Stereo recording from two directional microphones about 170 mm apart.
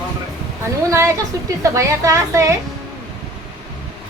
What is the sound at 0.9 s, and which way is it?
A woman's voice, 15° right (ahead or behind).